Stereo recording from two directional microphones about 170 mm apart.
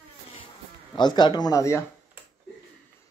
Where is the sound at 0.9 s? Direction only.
25° left (ahead or behind).